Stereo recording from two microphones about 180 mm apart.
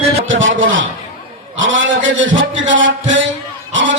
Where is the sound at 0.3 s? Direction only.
90° right.